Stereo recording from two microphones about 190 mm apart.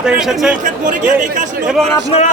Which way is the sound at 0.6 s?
45° right (ahead or behind).